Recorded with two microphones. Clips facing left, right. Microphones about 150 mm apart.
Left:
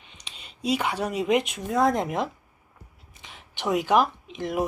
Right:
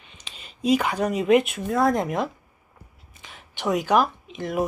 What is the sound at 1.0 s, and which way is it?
Speech, 10° left (ahead or behind).